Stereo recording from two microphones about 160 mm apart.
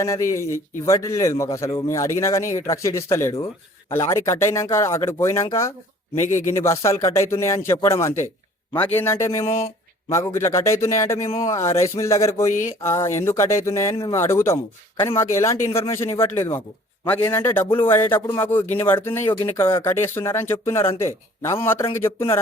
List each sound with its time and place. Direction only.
0.0 s a man's voice: 20° left (ahead or behind)